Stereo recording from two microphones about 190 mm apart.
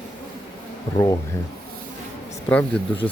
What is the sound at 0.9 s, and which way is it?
Speech, 20° left (ahead or behind).